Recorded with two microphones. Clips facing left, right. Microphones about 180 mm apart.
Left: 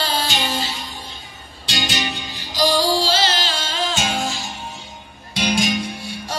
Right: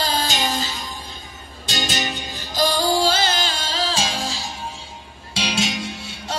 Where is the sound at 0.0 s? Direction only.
40° right (ahead or behind).